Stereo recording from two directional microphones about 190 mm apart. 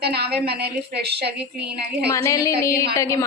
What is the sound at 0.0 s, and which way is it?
A woman's voice, 60° right (ahead or behind).